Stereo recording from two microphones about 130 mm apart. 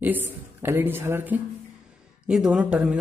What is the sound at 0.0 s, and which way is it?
A woman's voice, 15° right (ahead or behind).